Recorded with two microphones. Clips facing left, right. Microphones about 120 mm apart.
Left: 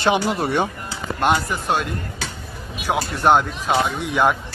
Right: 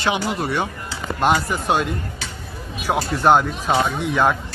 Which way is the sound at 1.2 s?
Centre (ahead or behind).